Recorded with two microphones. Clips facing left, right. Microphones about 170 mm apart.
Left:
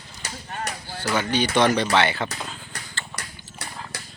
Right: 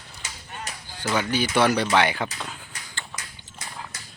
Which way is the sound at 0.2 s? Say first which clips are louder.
Left 6 dB; 70° left (ahead or behind).